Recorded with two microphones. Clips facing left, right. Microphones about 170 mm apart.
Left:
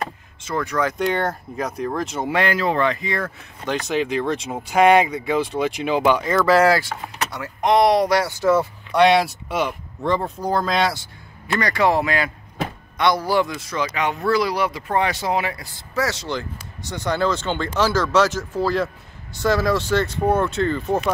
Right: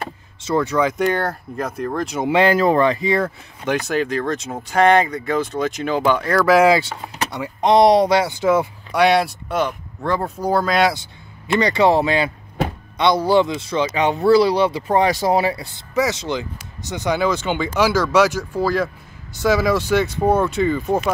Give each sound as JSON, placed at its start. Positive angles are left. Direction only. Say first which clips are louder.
{"t": 0.6, "sound": "speech", "louder": "right 4 dB", "side_deg": -20}
{"t": 1.0, "sound": "speech", "louder": "right 2 dB", "side_deg": -5}
{"t": 2.1, "sound": "speech", "louder": "right 7 dB", "side_deg": -20}
{"t": 2.4, "sound": "speech", "louder": "right 6 dB", "side_deg": -40}
{"t": 3.2, "sound": "speech", "louder": "right 6 dB", "side_deg": -10}
{"t": 5.5, "sound": "speech", "louder": "even", "side_deg": -45}
{"t": 5.9, "sound": "speech", "louder": "even", "side_deg": 5}
{"t": 6.4, "sound": "speech", "louder": "right 3 dB", "side_deg": -10}
{"t": 7.2, "sound": "a sound", "louder": "right 4 dB", "side_deg": -20}
{"t": 7.6, "sound": "speech", "louder": "right 3 dB", "side_deg": -30}
{"t": 11.4, "sound": "speech", "louder": "right 4 dB", "side_deg": -25}
{"t": 15.6, "sound": "speech", "louder": "right 4 dB", "side_deg": -20}